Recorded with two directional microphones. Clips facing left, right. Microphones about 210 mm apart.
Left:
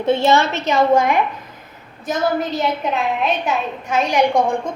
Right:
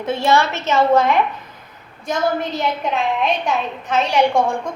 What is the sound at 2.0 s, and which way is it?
A woman's voice, centre (ahead or behind).